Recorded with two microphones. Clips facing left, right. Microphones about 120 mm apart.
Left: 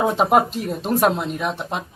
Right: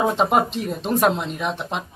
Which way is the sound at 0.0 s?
5° left (ahead or behind).